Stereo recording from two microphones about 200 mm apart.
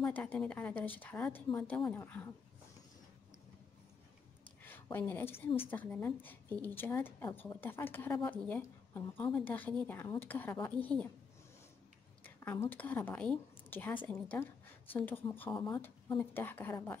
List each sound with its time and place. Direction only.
0.0 s a woman's voice: 5° left (ahead or behind)
4.6 s a woman's voice: 10° left (ahead or behind)
12.2 s a woman's voice: 10° left (ahead or behind)
15.6 s speech: 20° left (ahead or behind)
16.2 s a woman's voice: 10° left (ahead or behind)